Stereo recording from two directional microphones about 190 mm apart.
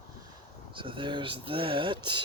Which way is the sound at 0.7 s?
25° right (ahead or behind).